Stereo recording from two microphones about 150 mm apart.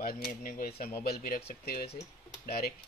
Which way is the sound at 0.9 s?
80° left.